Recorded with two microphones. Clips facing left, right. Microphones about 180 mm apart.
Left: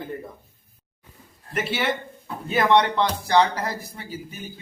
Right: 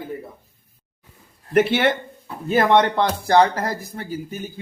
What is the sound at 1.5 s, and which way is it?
Speech, 60° right (ahead or behind).